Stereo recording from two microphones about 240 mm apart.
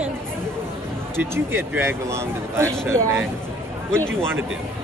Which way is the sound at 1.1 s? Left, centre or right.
Centre.